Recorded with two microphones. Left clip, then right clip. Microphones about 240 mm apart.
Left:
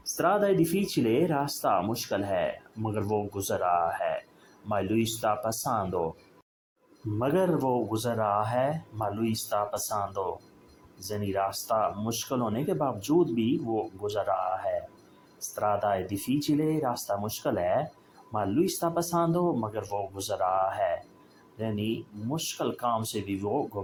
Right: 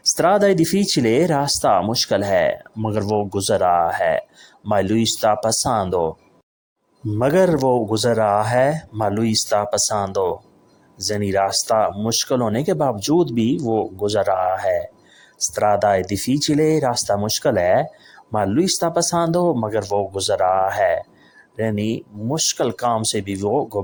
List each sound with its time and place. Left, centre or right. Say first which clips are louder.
0.0 s speech: right 10 dB; right
7.2 s speech: right 10 dB; right